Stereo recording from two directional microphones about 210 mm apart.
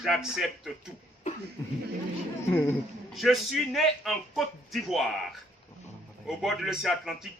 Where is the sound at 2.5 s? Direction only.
10° left (ahead or behind).